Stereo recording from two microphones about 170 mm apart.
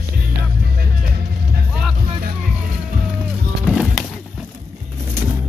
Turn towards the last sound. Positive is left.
turn(degrees=0)  # may be behind; listen again after turning